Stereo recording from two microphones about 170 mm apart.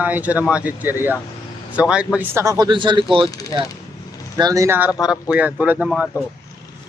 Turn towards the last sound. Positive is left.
turn(degrees=0)  # may be behind; listen again after turning